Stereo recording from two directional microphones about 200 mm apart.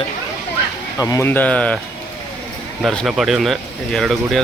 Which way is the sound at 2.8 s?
Centre (ahead or behind).